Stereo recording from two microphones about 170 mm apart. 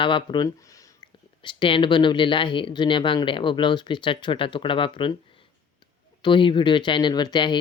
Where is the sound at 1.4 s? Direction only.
30° left (ahead or behind).